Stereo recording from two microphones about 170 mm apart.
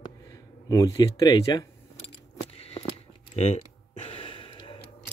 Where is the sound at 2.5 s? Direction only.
35° left (ahead or behind).